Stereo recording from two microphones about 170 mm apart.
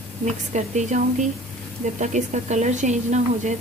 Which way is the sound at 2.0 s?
45° right (ahead or behind).